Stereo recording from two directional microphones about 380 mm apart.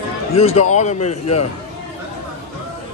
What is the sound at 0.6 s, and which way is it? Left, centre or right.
Speech, centre.